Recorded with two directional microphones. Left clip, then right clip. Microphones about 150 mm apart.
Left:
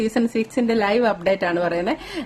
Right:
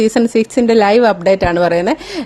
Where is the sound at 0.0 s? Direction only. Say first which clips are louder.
Right 9 dB; 50° right (ahead or behind).